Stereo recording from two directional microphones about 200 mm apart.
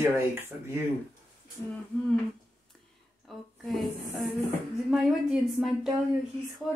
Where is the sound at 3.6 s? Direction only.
Centre (ahead or behind).